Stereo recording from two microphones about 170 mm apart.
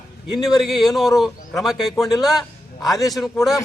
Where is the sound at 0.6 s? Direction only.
Centre (ahead or behind).